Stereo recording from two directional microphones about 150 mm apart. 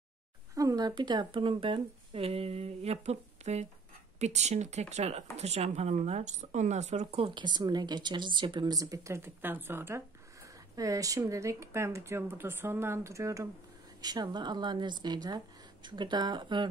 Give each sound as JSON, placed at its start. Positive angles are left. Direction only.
{"t": 0.6, "sound": "speech", "side_deg": -25}